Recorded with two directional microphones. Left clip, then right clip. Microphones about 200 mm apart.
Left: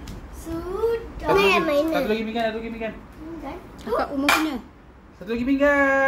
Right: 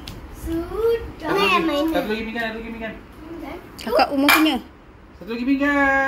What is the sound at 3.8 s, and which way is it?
Speech, 30° right (ahead or behind).